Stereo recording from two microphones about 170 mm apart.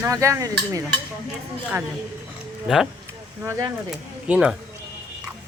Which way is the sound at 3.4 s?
15° right (ahead or behind).